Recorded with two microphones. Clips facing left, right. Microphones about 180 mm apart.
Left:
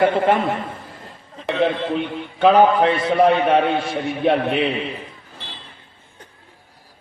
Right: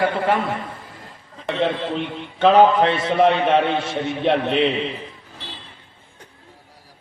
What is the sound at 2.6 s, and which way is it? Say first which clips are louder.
Speech: even; 25° right (ahead or behind).